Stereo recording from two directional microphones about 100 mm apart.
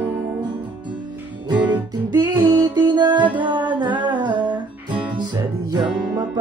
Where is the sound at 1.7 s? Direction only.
45° right (ahead or behind).